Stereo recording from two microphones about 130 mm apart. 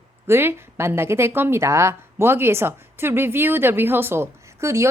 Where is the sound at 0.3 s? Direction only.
20° right (ahead or behind).